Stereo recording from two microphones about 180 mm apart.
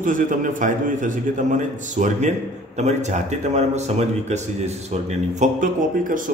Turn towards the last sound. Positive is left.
turn(degrees=-50)  # may be behind; listen again after turning